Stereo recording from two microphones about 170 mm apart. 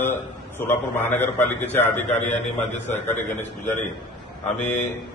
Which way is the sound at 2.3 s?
40° left (ahead or behind).